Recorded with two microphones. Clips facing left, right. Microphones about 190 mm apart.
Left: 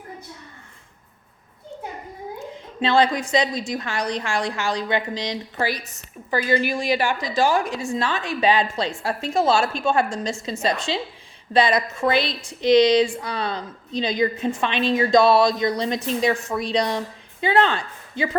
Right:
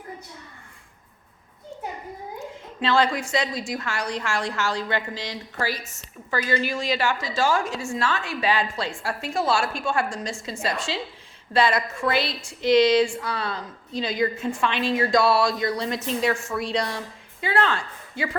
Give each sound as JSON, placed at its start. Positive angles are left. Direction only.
{"t": 2.8, "sound": "a woman's voice", "side_deg": 15}